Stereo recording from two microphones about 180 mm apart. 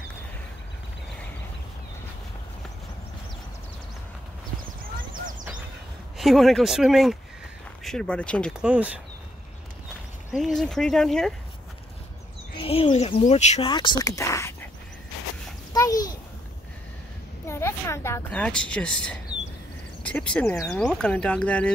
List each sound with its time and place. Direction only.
6.1 s speech: centre (ahead or behind)
10.3 s speech: centre (ahead or behind)
12.5 s speech: 30° left (ahead or behind)
13.7 s speech: 25° left (ahead or behind)
15.7 s a sound: 20° left (ahead or behind)
17.5 s a sound: 15° left (ahead or behind)
20.0 s speech: 5° left (ahead or behind)